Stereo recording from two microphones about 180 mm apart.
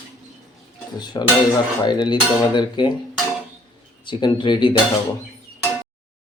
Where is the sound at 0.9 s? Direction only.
25° left (ahead or behind).